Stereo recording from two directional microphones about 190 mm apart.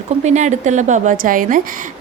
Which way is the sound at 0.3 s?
40° right (ahead or behind).